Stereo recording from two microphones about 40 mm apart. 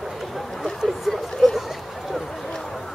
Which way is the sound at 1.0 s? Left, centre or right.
Centre.